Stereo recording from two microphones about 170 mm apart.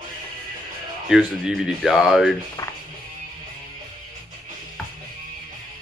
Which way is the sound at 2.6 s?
20° left (ahead or behind).